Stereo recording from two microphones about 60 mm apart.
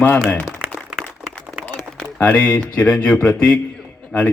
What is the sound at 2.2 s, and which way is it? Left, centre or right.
A man's voice, centre.